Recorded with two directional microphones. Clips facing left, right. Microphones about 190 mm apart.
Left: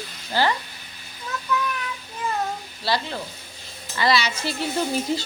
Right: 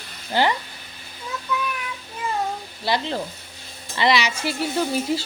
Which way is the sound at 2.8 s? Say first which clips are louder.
Right 2 dB; 20° right (ahead or behind).